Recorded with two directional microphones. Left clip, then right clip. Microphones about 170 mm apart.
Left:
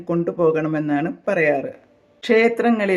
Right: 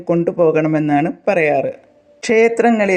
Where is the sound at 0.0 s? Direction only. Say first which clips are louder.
Right 5 dB; 25° right (ahead or behind).